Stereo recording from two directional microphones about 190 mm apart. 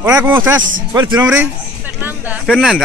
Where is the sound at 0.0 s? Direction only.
15° right (ahead or behind).